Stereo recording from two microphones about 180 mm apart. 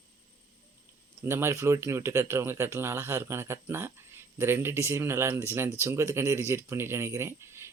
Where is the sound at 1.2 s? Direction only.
15° right (ahead or behind).